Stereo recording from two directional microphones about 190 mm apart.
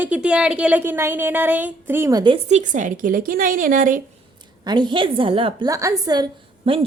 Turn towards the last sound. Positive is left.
turn(degrees=-30)  # may be behind; listen again after turning